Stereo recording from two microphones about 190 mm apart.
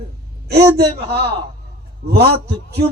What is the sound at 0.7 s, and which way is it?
Speech, 55° right (ahead or behind).